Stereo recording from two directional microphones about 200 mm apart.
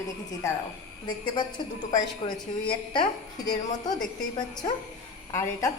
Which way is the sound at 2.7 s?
25° left (ahead or behind).